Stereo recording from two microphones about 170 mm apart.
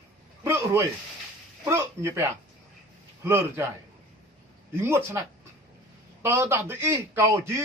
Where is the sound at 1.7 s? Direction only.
15° right (ahead or behind).